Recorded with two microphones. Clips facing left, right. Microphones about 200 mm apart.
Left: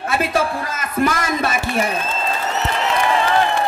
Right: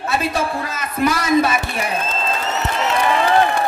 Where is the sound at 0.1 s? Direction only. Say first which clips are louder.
Left 1 dB; 50° left (ahead or behind).